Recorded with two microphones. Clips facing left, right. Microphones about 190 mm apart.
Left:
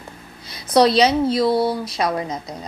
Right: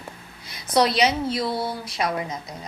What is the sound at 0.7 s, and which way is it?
A woman's voice, 25° left (ahead or behind).